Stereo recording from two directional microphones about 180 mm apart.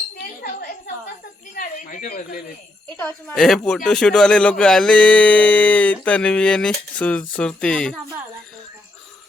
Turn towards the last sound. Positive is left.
turn(degrees=5)  # may be behind; listen again after turning